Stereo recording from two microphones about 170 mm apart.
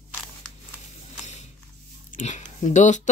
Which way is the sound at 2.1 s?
45° left (ahead or behind).